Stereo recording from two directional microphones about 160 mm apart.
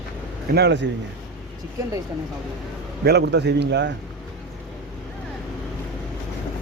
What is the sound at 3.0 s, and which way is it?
Speech, 90° right.